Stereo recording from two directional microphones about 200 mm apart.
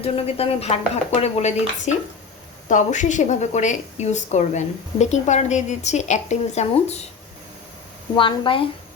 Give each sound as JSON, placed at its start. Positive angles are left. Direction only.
{"t": 0.0, "sound": "a woman's voice", "side_deg": 30}
{"t": 8.1, "sound": "a woman's voice", "side_deg": 25}